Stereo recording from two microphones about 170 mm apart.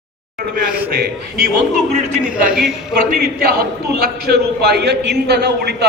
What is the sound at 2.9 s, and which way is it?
A man's voice, 60° right (ahead or behind).